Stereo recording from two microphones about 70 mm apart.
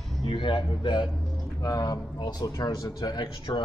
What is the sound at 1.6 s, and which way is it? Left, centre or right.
A man's voice, left.